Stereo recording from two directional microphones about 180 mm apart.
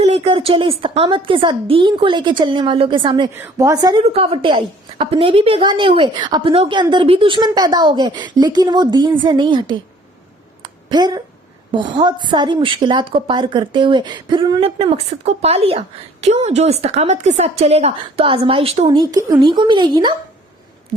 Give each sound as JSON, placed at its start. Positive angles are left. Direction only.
{"t": 0.0, "sound": "speech", "side_deg": -35}
{"t": 4.0, "sound": "speech", "side_deg": -30}
{"t": 10.6, "sound": "a sound", "side_deg": -25}
{"t": 11.7, "sound": "a woman's voice", "side_deg": -25}